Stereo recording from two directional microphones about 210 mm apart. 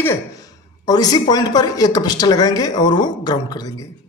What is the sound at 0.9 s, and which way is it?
Speech, 20° left (ahead or behind).